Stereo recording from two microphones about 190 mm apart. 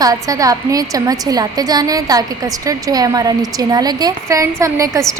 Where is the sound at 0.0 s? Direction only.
20° right (ahead or behind).